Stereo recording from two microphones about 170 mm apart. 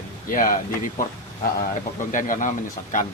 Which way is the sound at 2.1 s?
50° left (ahead or behind).